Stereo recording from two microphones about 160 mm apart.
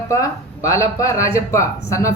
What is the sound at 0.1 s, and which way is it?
Speech, 20° left (ahead or behind).